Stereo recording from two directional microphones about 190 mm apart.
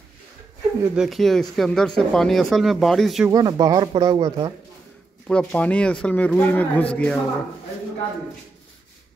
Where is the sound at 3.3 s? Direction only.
20° right (ahead or behind).